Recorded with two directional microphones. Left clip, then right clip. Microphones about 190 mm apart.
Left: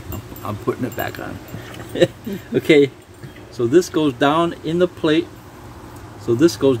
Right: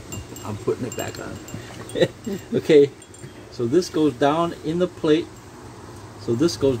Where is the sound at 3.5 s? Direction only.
30° left (ahead or behind).